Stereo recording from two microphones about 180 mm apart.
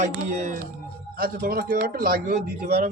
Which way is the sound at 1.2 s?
55° right (ahead or behind).